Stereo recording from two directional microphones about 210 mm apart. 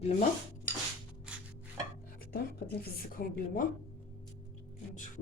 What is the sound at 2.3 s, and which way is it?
A woman's voice, 45° left (ahead or behind).